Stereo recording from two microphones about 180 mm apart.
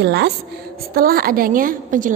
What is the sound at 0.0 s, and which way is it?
Speech, 70° right (ahead or behind).